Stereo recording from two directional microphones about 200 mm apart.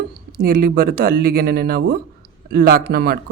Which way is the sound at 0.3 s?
45° right (ahead or behind).